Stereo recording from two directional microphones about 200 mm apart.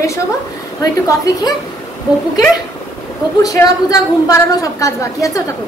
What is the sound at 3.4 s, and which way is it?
A woman's voice, 20° left (ahead or behind).